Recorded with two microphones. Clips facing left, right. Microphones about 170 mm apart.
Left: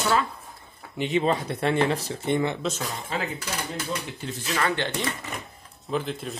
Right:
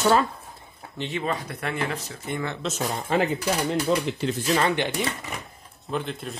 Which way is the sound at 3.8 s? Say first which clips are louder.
Right 8 dB; 85° right.